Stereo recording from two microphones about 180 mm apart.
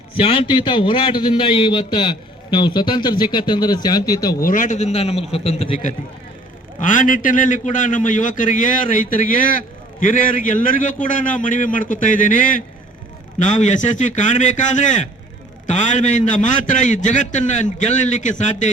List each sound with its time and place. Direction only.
0.2 s a man's voice: 30° left (ahead or behind)
4.4 s a man's voice: 50° left (ahead or behind); by 5.8 s 30° left (ahead or behind)
6.7 s a man's voice: 45° left (ahead or behind)